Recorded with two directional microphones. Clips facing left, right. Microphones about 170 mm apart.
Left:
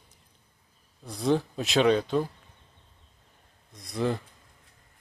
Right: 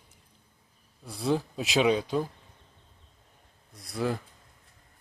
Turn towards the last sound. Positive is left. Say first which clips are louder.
# left 2 dB
turn(degrees=-5)  # may be behind; listen again after turning